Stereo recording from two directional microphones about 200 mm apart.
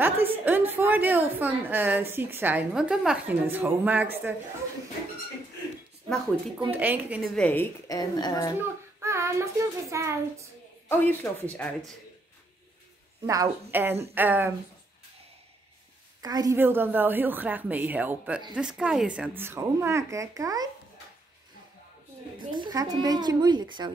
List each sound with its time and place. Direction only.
0.0 s a woman's voice: 10° right (ahead or behind)
6.7 s a woman's voice: 10° right (ahead or behind)
7.3 s a woman's voice: 5° left (ahead or behind)
7.9 s a woman's voice: 20° left (ahead or behind)
8.5 s child singing: 15° right (ahead or behind)
10.9 s speech: 10° left (ahead or behind)
13.3 s a woman's voice: 15° right (ahead or behind)
16.2 s a woman's voice: 20° right (ahead or behind)
22.4 s a woman's voice: 25° right (ahead or behind)